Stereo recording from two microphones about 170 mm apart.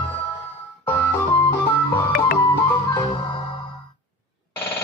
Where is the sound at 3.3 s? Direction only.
30° left (ahead or behind).